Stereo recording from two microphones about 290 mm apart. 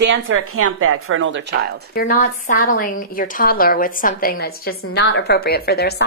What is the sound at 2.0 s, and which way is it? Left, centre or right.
A woman's voice, left.